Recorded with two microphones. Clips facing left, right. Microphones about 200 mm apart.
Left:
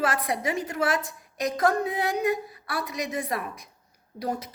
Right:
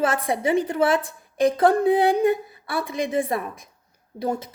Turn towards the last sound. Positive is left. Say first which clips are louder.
# right 4 dB
turn(degrees=-25)  # may be behind; listen again after turning